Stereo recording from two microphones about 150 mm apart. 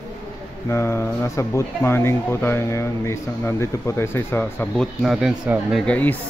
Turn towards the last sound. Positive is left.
turn(degrees=10)  # may be behind; listen again after turning